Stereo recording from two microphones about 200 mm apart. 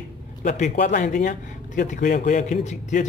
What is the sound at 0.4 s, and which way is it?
A man's voice, 35° left (ahead or behind).